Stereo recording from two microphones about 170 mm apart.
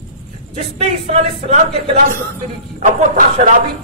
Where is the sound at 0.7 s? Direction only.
40° right (ahead or behind).